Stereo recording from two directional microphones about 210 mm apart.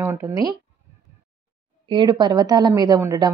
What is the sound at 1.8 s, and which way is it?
A woman's voice, 20° right (ahead or behind).